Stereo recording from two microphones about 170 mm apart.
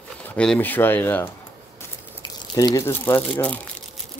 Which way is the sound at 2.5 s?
20° left (ahead or behind).